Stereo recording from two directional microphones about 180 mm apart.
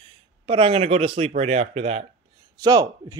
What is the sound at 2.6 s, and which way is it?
Speech, 20° right (ahead or behind).